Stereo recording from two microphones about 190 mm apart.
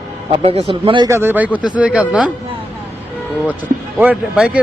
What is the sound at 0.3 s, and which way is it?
Speech, 30° right (ahead or behind).